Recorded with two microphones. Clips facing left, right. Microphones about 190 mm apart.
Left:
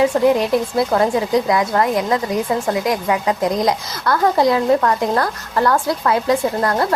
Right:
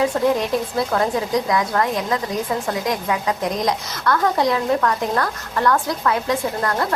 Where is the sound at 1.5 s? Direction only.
20° left (ahead or behind).